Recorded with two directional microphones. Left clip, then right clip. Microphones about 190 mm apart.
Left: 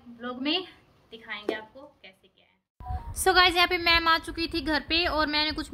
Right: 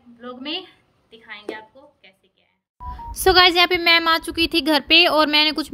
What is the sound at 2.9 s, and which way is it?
Speech, 20° right (ahead or behind).